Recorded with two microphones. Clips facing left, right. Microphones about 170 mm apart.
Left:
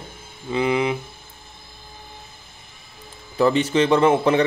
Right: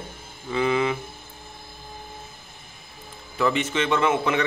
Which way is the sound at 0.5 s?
15° left (ahead or behind).